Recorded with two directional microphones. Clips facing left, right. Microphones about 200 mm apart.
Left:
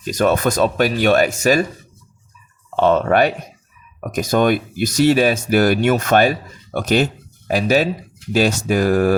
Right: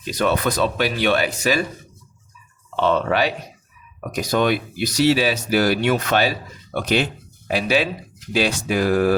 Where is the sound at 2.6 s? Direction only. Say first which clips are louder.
Left 4 dB; 45° left (ahead or behind).